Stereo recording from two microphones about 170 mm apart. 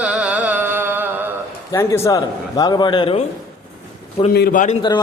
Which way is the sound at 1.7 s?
15° left (ahead or behind).